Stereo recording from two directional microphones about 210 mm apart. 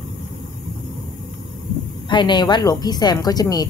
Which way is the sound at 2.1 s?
20° left (ahead or behind).